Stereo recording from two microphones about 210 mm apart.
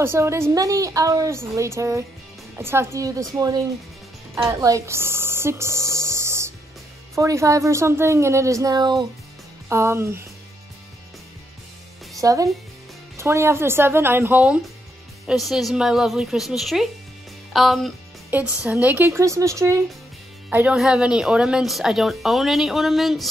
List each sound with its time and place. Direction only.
0.0 s a woman's voice: 10° right (ahead or behind)
12.2 s a woman's voice: 15° right (ahead or behind); by 23.3 s centre (ahead or behind)